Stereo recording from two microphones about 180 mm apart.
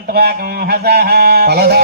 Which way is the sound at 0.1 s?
60° right (ahead or behind).